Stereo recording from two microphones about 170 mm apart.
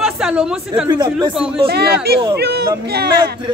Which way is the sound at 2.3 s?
70° right (ahead or behind).